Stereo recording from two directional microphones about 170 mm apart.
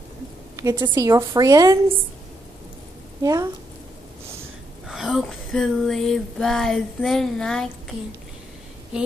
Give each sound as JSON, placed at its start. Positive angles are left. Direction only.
{"t": 0.6, "sound": "a woman's voice", "side_deg": -25}
{"t": 3.2, "sound": "a woman's voice", "side_deg": -20}
{"t": 4.8, "sound": "a sound", "side_deg": 0}